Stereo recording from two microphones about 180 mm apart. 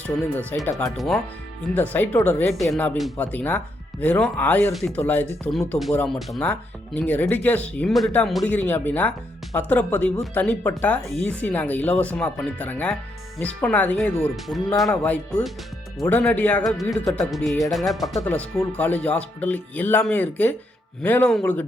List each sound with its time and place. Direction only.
0.3 s speech: 15° left (ahead or behind)
0.9 s speech: centre (ahead or behind)
18.2 s speech: 10° left (ahead or behind)